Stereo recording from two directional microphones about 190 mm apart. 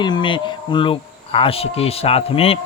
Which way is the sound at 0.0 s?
25° left (ahead or behind).